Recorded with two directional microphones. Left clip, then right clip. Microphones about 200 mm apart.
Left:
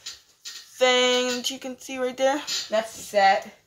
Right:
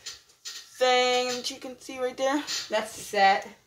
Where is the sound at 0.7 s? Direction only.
15° left (ahead or behind).